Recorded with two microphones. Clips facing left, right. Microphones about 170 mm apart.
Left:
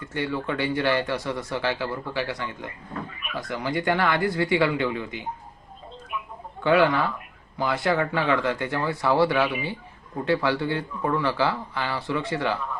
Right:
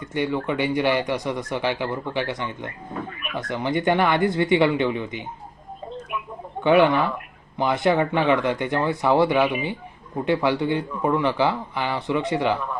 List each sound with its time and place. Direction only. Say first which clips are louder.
0.0 s speech: right 4 dB; 20° right (ahead or behind)
6.6 s speech: right 3 dB; 20° right (ahead or behind)